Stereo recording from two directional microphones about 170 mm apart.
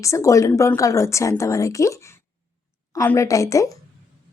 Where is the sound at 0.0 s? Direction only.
20° left (ahead or behind).